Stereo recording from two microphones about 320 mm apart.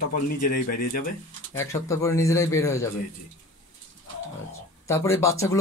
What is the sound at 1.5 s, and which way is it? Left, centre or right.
A man's voice, centre.